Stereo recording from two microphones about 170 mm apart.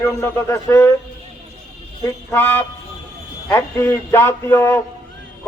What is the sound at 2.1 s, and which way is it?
A man's voice, 10° left (ahead or behind).